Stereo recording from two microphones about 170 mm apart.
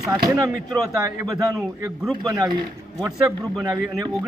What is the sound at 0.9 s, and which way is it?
Speech, 20° right (ahead or behind).